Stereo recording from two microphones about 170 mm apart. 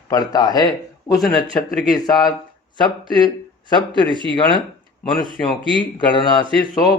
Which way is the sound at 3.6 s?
25° left (ahead or behind).